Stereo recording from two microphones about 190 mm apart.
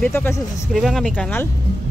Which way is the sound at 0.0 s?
10° left (ahead or behind).